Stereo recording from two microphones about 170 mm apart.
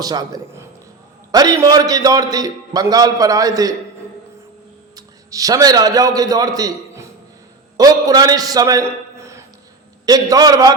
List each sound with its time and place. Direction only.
0.0 s a man's voice: 25° right (ahead or behind)
4.9 s a man's voice: 20° right (ahead or behind)